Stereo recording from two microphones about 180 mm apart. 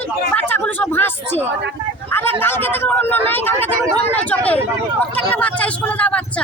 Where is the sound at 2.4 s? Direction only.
10° left (ahead or behind).